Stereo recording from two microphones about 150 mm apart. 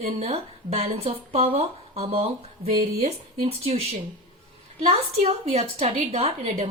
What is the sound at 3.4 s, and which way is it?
A woman's voice, 40° right (ahead or behind).